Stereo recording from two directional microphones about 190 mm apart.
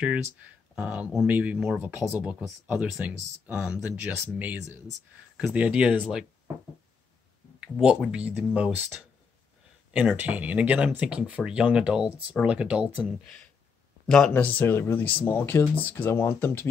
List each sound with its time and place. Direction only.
0.7 s speech: centre (ahead or behind)
7.8 s speech: 5° right (ahead or behind)
9.9 s speech: 5° right (ahead or behind)
14.1 s speech: 5° left (ahead or behind)